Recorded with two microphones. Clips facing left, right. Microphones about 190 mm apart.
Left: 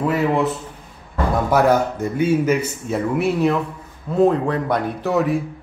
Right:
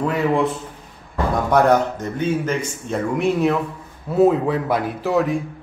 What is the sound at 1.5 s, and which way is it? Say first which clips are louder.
Speech: right 1 dB; 5° left (ahead or behind).